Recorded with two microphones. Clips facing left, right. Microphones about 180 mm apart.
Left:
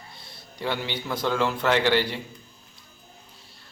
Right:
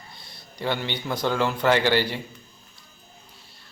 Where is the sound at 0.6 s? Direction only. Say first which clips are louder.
Right 1 dB; centre (ahead or behind).